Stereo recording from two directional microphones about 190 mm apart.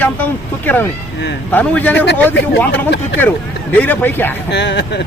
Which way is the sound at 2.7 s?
65° left (ahead or behind).